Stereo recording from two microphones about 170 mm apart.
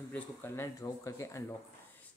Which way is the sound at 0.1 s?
15° left (ahead or behind).